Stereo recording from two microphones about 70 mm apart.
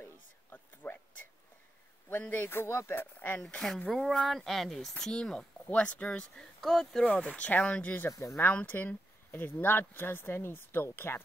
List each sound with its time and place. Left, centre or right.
0.0 s a sound: left
2.0 s speech: left
3.4 s speech: centre
5.7 s speech: centre
7.1 s speech: centre
8.1 s speech: left
8.6 s speech: left